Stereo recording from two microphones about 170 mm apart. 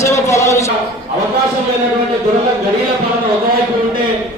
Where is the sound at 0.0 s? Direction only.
15° left (ahead or behind).